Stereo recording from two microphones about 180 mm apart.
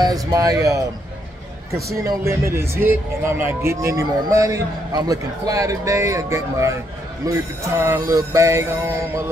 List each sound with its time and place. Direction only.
0.0 s a man's voice: 20° right (ahead or behind)